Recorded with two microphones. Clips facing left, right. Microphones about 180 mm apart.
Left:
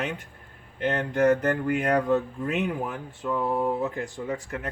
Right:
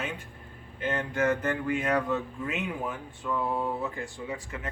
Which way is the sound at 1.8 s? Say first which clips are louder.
Left 7 dB; 40° left (ahead or behind).